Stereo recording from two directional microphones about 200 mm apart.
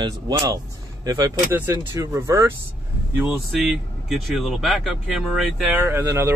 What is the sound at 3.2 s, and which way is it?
Speech, centre (ahead or behind).